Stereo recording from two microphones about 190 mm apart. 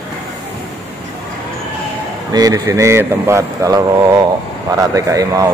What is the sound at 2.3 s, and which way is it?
Speech, 20° right (ahead or behind).